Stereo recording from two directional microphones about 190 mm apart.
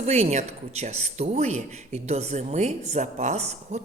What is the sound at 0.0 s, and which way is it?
Speech, 35° right (ahead or behind).